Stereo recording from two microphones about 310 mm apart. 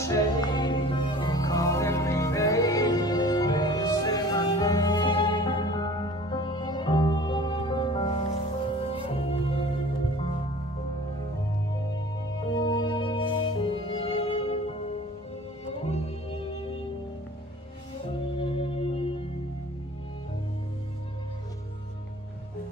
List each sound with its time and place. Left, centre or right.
0.0 s music: centre
12.5 s music: centre
15.6 s music: centre
18.4 s music: centre